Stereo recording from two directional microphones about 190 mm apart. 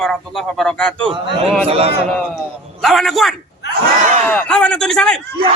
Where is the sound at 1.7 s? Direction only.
30° right (ahead or behind).